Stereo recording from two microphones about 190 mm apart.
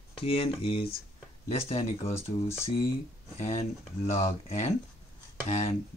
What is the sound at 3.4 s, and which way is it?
Speech, 35° left (ahead or behind).